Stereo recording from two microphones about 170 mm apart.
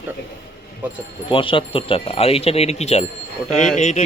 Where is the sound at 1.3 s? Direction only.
30° left (ahead or behind).